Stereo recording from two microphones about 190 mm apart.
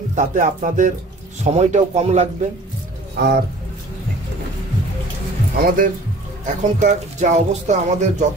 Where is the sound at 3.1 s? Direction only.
60° right (ahead or behind).